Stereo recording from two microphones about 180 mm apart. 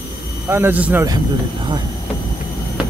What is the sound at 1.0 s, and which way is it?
Speech, 25° right (ahead or behind).